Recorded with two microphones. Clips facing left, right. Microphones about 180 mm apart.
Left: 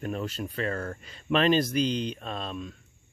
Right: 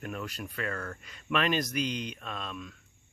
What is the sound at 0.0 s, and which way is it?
Speech, 30° left (ahead or behind).